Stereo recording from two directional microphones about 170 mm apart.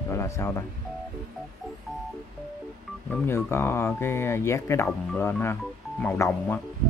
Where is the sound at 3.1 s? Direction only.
15° left (ahead or behind).